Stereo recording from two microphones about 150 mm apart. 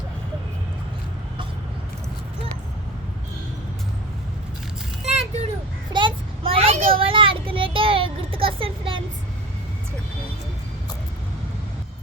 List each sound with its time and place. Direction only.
5.0 s vehicle: 45° right (ahead or behind)
5.9 s child singing: 30° right (ahead or behind)
7.0 s a sound: 35° right (ahead or behind)